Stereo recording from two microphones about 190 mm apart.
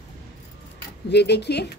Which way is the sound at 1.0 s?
60° left (ahead or behind).